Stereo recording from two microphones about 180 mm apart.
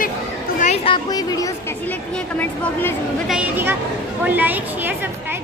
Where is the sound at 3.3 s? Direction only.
10° right (ahead or behind).